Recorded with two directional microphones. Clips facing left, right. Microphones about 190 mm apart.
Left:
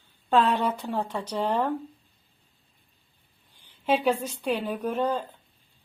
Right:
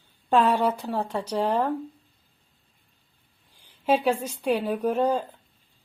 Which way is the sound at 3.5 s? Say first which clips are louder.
Right 2 dB; 10° right (ahead or behind).